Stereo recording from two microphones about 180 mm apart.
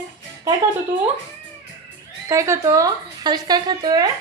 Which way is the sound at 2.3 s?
15° right (ahead or behind).